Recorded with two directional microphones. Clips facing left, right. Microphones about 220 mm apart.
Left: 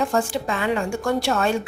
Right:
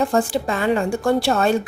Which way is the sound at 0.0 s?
35° right (ahead or behind).